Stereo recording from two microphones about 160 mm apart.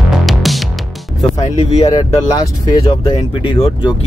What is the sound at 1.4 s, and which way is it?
Speech, 40° left (ahead or behind).